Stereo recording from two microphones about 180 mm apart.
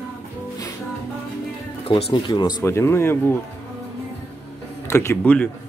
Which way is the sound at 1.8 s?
30° left (ahead or behind).